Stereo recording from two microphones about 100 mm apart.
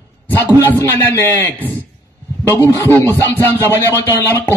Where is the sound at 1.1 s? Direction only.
30° left (ahead or behind).